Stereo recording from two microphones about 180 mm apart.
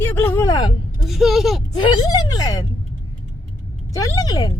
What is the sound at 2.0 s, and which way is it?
Speech, 20° left (ahead or behind).